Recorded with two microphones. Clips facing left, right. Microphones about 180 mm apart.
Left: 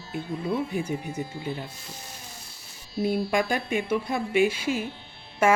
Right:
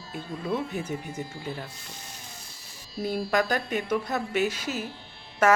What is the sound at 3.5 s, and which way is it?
Speech, 10° left (ahead or behind).